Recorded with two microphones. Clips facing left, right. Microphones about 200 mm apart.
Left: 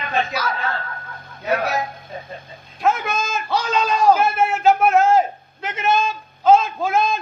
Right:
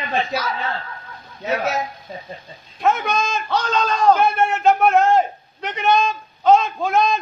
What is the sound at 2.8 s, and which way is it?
A man's voice, centre (ahead or behind).